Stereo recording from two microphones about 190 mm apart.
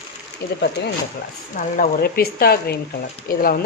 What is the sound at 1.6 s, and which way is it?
Speech, 50° left (ahead or behind).